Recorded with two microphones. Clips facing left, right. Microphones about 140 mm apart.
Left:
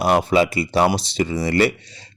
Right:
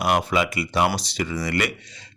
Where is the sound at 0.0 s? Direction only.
30° left (ahead or behind).